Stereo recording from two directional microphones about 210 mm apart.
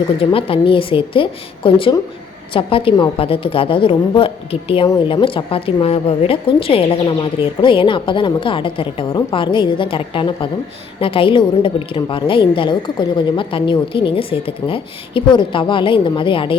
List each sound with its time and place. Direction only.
0.2 s a woman's voice: 25° left (ahead or behind)